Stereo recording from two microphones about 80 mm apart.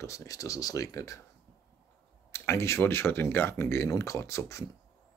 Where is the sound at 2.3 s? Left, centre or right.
Left.